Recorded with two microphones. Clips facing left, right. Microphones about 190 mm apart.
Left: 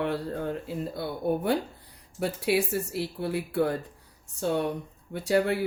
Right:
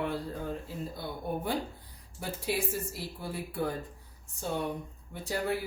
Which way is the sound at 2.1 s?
70° left (ahead or behind).